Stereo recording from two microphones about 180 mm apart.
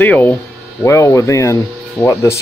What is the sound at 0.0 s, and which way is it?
Speech, 10° left (ahead or behind).